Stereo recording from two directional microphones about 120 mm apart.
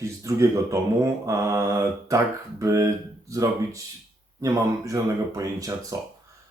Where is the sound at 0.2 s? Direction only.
25° right (ahead or behind).